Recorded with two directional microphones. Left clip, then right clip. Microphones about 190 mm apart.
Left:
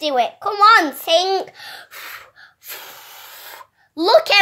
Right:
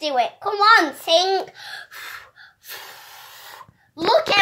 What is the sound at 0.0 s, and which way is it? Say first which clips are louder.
A child's voice: left 3 dB; 35° left (ahead or behind).